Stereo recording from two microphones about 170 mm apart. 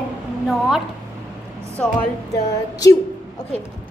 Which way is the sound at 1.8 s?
5° left (ahead or behind).